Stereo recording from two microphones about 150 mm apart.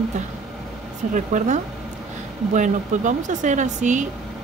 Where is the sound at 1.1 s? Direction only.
55° right (ahead or behind).